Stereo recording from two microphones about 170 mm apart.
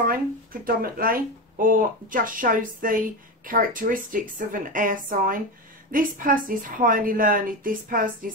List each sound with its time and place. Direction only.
0.0 s a woman's voice: 55° right (ahead or behind)